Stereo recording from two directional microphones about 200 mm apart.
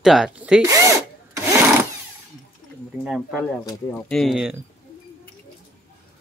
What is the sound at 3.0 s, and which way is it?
Speech, 5° right (ahead or behind).